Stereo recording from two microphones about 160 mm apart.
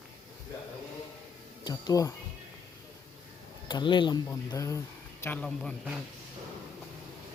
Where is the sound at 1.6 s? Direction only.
25° left (ahead or behind).